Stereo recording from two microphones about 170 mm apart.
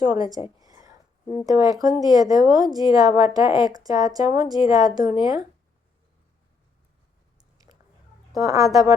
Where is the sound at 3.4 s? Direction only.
25° left (ahead or behind).